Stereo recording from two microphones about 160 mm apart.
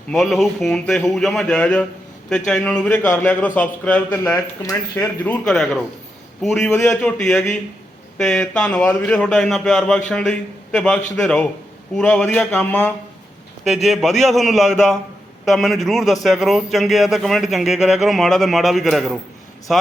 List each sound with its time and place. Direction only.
0.1 s speech: centre (ahead or behind)
6.7 s speech: 15° left (ahead or behind)
6.9 s speech: 5° left (ahead or behind)